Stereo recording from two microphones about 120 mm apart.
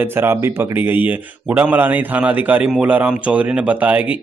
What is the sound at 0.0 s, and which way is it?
Speech, 20° right (ahead or behind).